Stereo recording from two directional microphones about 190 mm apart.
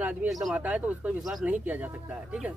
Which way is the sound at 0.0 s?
10° right (ahead or behind).